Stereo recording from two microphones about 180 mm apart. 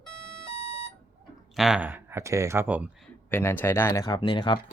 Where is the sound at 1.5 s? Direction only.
5° right (ahead or behind).